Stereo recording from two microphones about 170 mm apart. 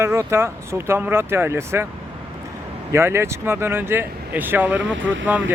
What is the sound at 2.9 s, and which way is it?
Speech, 15° right (ahead or behind).